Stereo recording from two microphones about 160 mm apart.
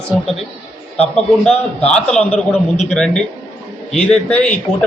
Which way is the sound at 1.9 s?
5° left (ahead or behind).